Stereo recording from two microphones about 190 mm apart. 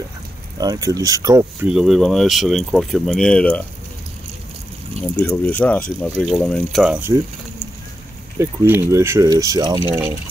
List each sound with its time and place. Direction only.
0.6 s speech: 20° right (ahead or behind)
1.7 s speech: centre (ahead or behind)
5.1 s speech: 10° left (ahead or behind); by 7.2 s 10° right (ahead or behind)
8.4 s speech: 10° right (ahead or behind)